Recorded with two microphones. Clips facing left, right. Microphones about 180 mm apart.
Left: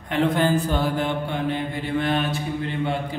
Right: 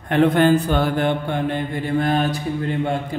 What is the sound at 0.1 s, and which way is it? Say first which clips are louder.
A man's voice: right 5 dB; 60° right (ahead or behind).